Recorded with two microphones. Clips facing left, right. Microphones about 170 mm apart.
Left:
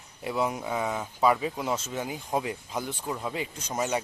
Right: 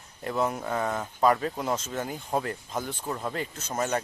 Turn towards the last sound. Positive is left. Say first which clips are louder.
# even
turn(degrees=10)  # may be behind; listen again after turning